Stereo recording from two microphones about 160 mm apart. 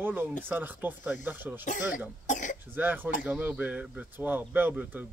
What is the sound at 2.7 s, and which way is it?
Speech, 10° right (ahead or behind).